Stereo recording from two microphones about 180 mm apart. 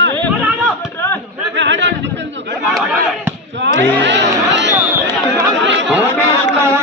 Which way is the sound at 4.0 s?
80° right.